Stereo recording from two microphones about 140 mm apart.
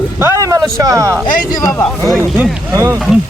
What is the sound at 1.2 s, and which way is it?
Speech, 30° left (ahead or behind).